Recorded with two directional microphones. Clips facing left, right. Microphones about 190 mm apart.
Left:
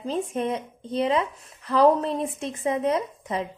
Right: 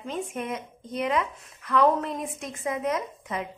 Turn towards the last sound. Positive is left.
turn(degrees=30)  # may be behind; listen again after turning